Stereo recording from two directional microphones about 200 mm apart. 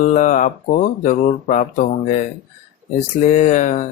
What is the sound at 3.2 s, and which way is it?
Mantra, 40° left (ahead or behind).